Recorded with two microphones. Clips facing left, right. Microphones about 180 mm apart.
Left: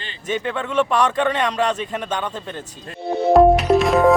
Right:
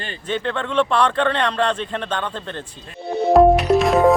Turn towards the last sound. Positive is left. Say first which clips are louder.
# even
turn(degrees=0)  # may be behind; listen again after turning